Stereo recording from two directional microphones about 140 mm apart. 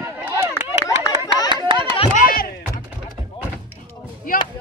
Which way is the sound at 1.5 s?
35° right (ahead or behind).